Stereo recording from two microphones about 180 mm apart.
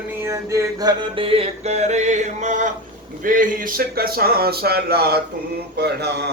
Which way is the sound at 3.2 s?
50° right (ahead or behind).